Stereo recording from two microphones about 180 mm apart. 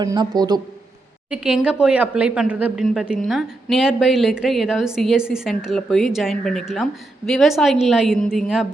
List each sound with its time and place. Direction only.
0.0 s speech: 20° right (ahead or behind)
1.3 s a woman's voice: 5° right (ahead or behind)